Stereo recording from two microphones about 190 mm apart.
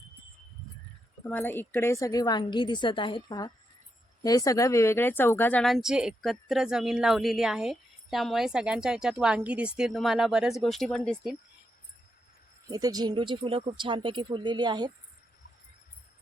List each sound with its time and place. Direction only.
1.2 s a woman's voice: 10° left (ahead or behind)
12.7 s speech: 20° right (ahead or behind)